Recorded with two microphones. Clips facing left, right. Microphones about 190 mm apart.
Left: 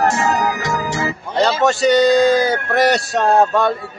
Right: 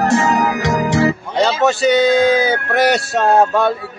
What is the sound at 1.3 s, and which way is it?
A man's voice, centre (ahead or behind).